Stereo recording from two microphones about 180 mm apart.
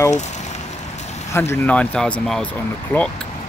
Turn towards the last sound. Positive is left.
turn(degrees=10)  # may be behind; listen again after turning